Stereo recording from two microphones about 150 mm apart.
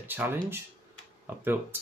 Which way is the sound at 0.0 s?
15° right (ahead or behind).